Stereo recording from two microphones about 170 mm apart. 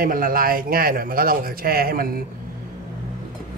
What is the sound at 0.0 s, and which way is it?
A man's voice, 60° right (ahead or behind).